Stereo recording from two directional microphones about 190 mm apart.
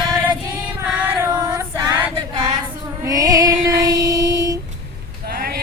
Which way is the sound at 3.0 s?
20° right (ahead or behind).